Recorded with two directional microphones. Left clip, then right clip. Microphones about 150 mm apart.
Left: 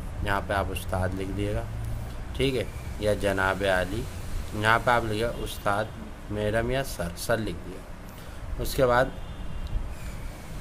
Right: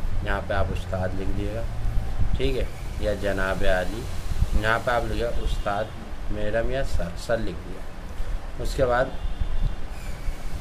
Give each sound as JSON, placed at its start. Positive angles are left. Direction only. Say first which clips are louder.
{"t": 0.2, "sound": "speech", "louder": "even", "side_deg": 40}
{"t": 8.6, "sound": "speech", "louder": "even", "side_deg": 40}